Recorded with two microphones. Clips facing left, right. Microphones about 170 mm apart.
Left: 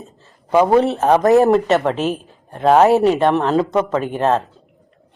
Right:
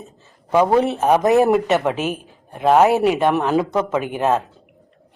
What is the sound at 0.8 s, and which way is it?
Speech, centre (ahead or behind).